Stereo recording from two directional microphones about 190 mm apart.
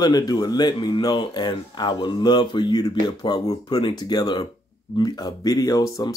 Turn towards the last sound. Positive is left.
turn(degrees=20)  # may be behind; listen again after turning